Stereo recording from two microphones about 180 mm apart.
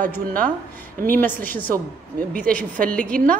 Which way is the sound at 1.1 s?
10° left (ahead or behind).